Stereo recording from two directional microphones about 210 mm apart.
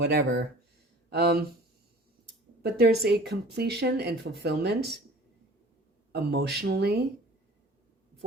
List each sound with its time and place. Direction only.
0.0 s speech: 50° right (ahead or behind)
2.6 s speech: 50° right (ahead or behind)
6.1 s speech: 50° right (ahead or behind)